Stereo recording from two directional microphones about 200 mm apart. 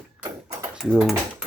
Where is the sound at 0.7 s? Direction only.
Centre (ahead or behind).